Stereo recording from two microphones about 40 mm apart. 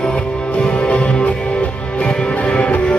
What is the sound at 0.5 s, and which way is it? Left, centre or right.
Music, left.